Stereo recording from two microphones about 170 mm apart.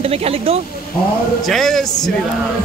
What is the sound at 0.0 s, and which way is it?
Speech, 35° right (ahead or behind).